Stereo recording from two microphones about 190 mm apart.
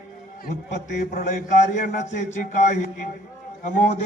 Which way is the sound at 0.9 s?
40° left (ahead or behind).